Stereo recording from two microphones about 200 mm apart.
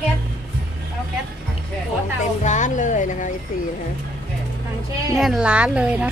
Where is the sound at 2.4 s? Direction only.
40° left (ahead or behind).